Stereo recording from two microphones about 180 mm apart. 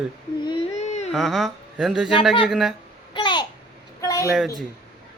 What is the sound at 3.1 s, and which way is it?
Babbling, 25° left (ahead or behind).